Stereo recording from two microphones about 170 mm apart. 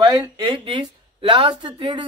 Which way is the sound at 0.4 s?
25° right (ahead or behind).